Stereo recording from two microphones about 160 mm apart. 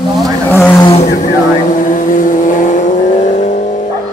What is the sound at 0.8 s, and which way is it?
Vehicle, 40° left (ahead or behind).